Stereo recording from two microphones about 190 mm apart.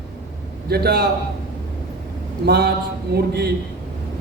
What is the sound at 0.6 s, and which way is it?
Speech, 55° right (ahead or behind).